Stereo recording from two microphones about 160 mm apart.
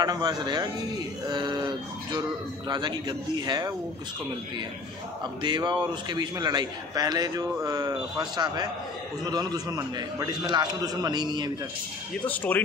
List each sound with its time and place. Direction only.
0.0 s a man's voice: 25° right (ahead or behind)
5.2 s a man's voice: 25° right (ahead or behind)
12.3 s speech: 10° left (ahead or behind)